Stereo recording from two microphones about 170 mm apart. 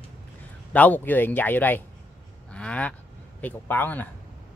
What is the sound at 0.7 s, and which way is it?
Speech, 10° left (ahead or behind).